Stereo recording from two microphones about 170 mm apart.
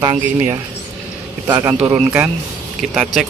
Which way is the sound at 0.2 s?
10° right (ahead or behind).